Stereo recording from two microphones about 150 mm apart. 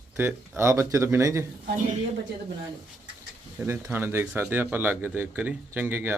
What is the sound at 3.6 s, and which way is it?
Speech, 15° right (ahead or behind).